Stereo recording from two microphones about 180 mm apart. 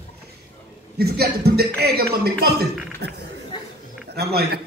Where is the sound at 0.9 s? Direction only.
60° right (ahead or behind).